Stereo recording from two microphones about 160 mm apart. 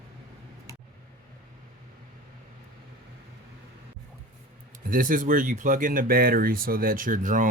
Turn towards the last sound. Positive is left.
turn(degrees=-55)  # may be behind; listen again after turning